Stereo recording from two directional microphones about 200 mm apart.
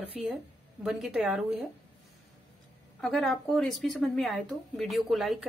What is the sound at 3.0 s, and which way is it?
Speech, centre (ahead or behind).